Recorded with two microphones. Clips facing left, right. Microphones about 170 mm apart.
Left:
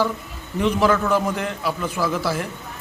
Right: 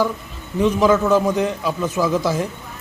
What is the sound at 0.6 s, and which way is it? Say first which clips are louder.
A man's voice: right 3 dB; 15° right (ahead or behind).